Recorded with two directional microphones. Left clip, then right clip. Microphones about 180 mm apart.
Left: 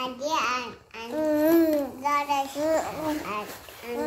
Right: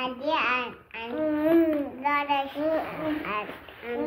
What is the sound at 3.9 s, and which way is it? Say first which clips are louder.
Speech: even; 5° left (ahead or behind).